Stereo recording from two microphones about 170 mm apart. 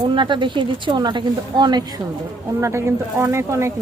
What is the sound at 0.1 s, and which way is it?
Speech, 30° right (ahead or behind).